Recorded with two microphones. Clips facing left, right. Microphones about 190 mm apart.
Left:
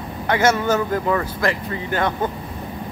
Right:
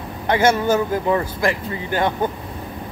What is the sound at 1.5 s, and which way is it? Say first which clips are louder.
Speech: right 1 dB; 25° right (ahead or behind).